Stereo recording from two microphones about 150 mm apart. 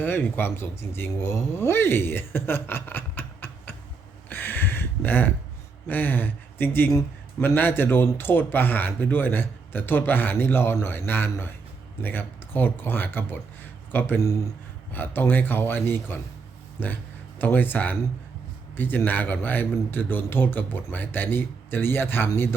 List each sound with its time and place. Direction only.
0.0 s speech: 15° left (ahead or behind)
4.3 s a sound: 15° left (ahead or behind)
5.9 s speech: 10° left (ahead or behind)